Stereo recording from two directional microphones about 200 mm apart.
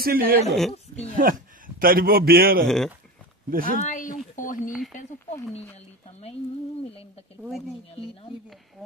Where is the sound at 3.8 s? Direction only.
40° left (ahead or behind).